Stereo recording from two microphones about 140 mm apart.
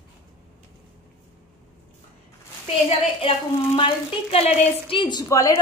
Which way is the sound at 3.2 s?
40° left (ahead or behind).